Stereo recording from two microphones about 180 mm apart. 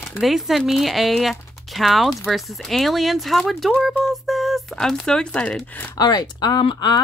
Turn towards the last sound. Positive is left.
turn(degrees=25)  # may be behind; listen again after turning